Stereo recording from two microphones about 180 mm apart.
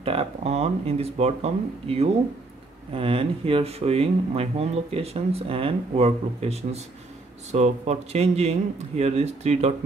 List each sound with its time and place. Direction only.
0.0 s speech: 30° right (ahead or behind)